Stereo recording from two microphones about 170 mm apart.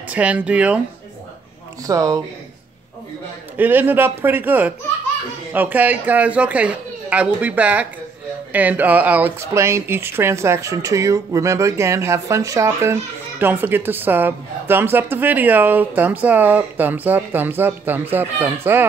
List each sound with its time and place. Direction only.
0.1 s speech: 10° right (ahead or behind)
1.9 s speech: 20° right (ahead or behind)
3.5 s speech: 10° right (ahead or behind)